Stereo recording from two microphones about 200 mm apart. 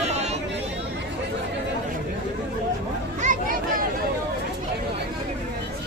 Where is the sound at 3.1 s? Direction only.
40° right (ahead or behind).